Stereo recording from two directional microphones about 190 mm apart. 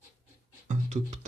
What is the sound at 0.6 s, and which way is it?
Music, 40° right (ahead or behind).